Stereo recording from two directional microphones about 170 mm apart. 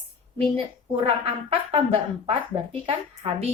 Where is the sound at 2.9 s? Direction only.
30° right (ahead or behind).